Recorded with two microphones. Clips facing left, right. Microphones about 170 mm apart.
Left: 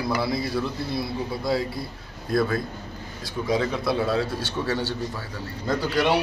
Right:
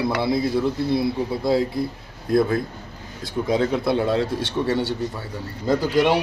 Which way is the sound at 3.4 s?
25° right (ahead or behind).